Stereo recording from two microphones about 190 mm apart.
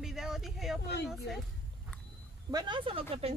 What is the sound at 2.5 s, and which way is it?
Speech, 25° right (ahead or behind).